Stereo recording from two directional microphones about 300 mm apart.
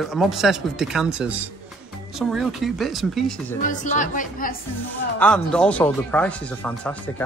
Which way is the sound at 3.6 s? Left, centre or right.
Left.